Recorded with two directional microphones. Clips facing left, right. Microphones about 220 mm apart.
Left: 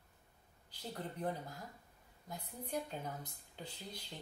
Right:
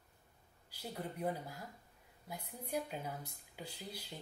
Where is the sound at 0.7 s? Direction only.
10° right (ahead or behind).